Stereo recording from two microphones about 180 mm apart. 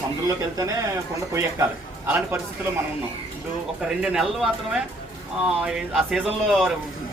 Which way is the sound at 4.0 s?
5° right (ahead or behind).